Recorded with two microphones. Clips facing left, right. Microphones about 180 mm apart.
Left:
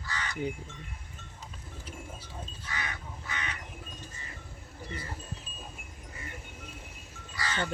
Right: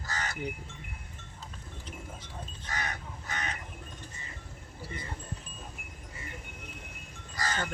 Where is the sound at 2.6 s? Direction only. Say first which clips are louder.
Right 3 dB; 45° right (ahead or behind).